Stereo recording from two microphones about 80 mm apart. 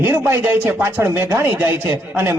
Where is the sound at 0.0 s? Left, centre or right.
Right.